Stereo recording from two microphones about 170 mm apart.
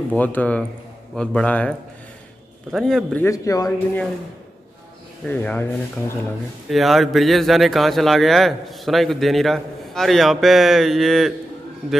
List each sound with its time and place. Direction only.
0.1 s a man's voice: 10° left (ahead or behind)
3.3 s speech: 20° left (ahead or behind)
5.2 s speech: 10° left (ahead or behind)
6.7 s a man's voice: centre (ahead or behind)